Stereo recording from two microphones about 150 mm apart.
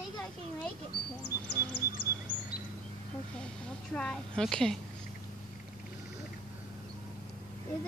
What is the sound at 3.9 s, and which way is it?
Speech, 5° left (ahead or behind).